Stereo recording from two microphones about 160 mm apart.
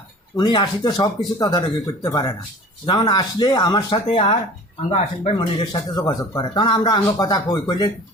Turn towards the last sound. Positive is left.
turn(degrees=25)  # may be behind; listen again after turning